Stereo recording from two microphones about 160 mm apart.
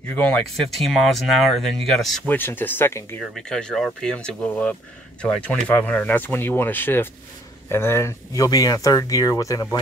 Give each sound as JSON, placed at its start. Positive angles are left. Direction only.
{"t": 0.1, "sound": "speech", "side_deg": 5}
{"t": 3.2, "sound": "speech", "side_deg": 5}